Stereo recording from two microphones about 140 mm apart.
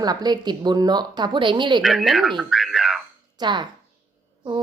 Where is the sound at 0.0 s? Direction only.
30° right (ahead or behind).